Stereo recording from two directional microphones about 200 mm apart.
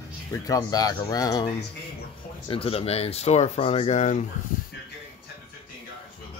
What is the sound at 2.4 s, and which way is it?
Speech, 25° left (ahead or behind).